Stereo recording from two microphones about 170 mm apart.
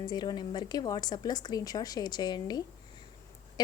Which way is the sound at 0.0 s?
25° left (ahead or behind).